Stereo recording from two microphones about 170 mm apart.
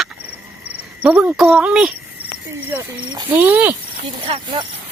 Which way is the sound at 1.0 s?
10° right (ahead or behind).